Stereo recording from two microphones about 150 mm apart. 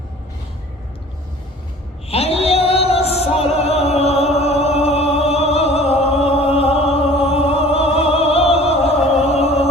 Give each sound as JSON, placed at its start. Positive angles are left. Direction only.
{"t": 2.0, "sound": "music", "side_deg": 40}